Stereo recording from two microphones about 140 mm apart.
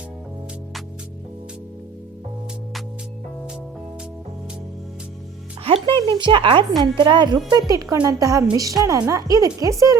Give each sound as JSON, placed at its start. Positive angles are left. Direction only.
{"t": 5.6, "sound": "speech", "side_deg": -40}